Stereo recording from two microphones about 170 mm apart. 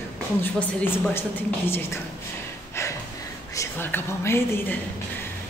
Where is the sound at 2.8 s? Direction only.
15° left (ahead or behind).